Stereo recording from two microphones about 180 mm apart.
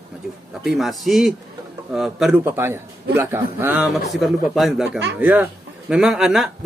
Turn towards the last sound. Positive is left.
turn(degrees=0)  # may be behind; listen again after turning